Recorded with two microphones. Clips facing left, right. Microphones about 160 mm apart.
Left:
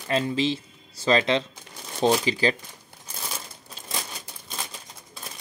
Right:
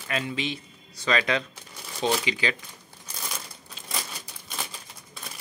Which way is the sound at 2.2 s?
40° left (ahead or behind).